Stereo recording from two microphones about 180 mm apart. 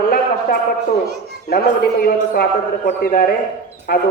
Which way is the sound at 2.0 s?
55° left (ahead or behind).